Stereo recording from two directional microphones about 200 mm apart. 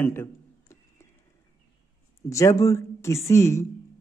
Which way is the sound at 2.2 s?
15° left (ahead or behind).